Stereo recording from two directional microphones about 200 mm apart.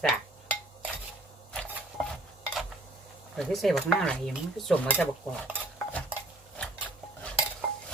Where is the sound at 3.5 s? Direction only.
Centre (ahead or behind).